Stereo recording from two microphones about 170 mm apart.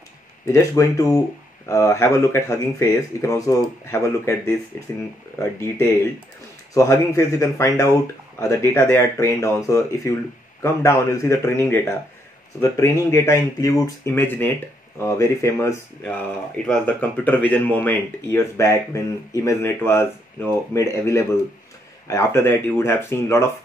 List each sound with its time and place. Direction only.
0.5 s speech: 20° left (ahead or behind)
16.5 s speech: 5° left (ahead or behind)